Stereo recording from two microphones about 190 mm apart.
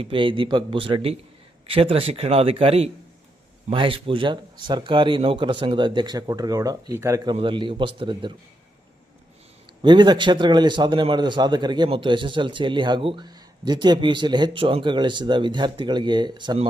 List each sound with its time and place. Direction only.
0.0 s a man's voice: 25° right (ahead or behind)
7.3 s a man's voice: 25° right (ahead or behind)
9.8 s a man's voice: 25° right (ahead or behind)